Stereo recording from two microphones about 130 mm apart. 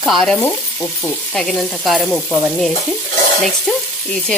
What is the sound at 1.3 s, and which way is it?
Sizzle, 5° left (ahead or behind).